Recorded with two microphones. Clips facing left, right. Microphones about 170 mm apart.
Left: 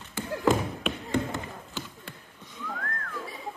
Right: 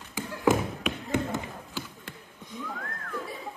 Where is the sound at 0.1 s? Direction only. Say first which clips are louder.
Even; 15° right (ahead or behind).